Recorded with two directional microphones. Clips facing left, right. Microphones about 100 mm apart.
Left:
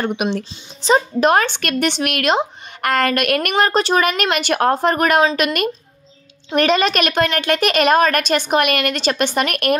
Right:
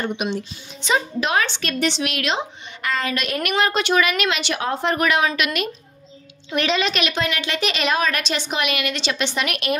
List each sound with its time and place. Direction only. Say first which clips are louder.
0.0 s speech: left 4 dB; 65° left (ahead or behind)
0.8 s speech: left 7 dB; 45° left (ahead or behind); by 3.5 s 60° left (ahead or behind)
3.5 s a woman's voice: left 2 dB; 40° left (ahead or behind)